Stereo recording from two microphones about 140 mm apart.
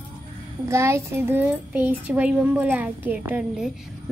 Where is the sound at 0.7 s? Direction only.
20° right (ahead or behind).